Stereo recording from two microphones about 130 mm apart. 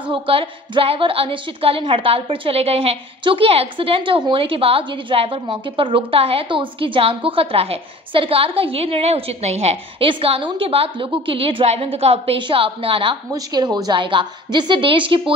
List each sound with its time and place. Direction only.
0.0 s a woman's voice: 40° right (ahead or behind)
13.3 s a woman's voice: 30° right (ahead or behind)